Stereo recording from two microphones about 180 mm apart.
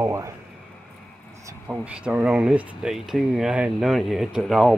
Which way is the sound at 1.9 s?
5° right (ahead or behind).